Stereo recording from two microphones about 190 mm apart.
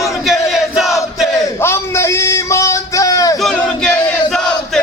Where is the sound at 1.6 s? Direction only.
15° left (ahead or behind).